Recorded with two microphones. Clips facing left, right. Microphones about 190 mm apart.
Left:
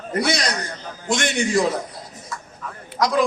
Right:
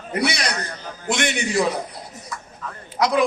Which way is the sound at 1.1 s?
60° right (ahead or behind).